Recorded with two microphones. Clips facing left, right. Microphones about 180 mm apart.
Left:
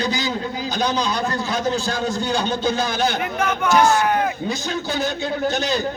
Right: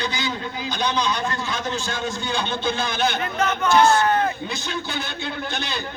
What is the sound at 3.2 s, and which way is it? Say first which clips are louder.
Speech: left 1 dB; 10° left (ahead or behind).